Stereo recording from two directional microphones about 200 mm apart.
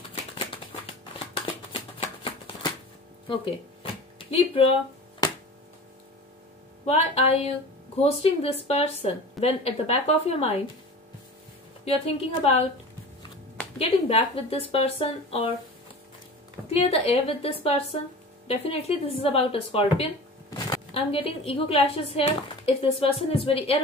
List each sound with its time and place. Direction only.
1.2 s shuffling cards: 25° left (ahead or behind)
4.3 s speech: 30° left (ahead or behind)
5.2 s music: 20° left (ahead or behind)
6.9 s a woman's voice: 30° left (ahead or behind)
11.8 s a woman's voice: 30° left (ahead or behind)
13.7 s speech: 30° left (ahead or behind)
16.7 s speech: 30° left (ahead or behind)
20.4 s a sound: 15° left (ahead or behind)
20.9 s speech: 30° left (ahead or behind)